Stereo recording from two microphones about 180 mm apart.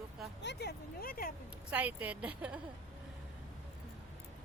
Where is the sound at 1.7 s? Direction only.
10° right (ahead or behind).